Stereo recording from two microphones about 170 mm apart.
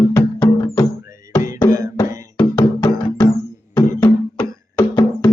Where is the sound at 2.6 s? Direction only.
20° left (ahead or behind).